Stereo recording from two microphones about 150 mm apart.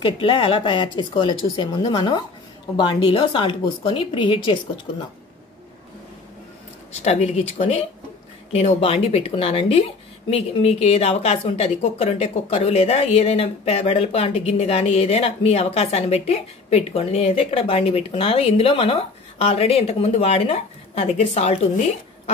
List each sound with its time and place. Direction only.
0.0 s speech: 35° left (ahead or behind)
7.0 s a woman's voice: 45° left (ahead or behind)